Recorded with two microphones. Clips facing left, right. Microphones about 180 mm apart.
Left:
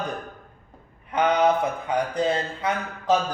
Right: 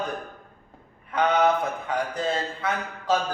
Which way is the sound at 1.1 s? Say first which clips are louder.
Left 1 dB; 20° left (ahead or behind).